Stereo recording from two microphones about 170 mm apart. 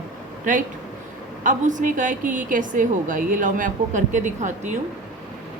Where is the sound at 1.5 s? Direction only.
50° right (ahead or behind).